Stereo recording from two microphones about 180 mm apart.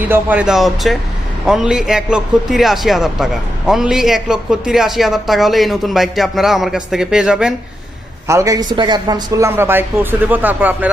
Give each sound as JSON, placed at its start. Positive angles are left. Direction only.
{"t": 0.1, "sound": "speech", "side_deg": -10}
{"t": 8.3, "sound": "speech", "side_deg": -15}